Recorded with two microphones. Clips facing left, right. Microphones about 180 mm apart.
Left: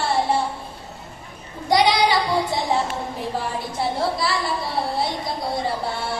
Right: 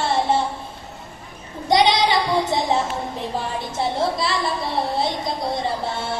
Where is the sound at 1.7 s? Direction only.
20° right (ahead or behind).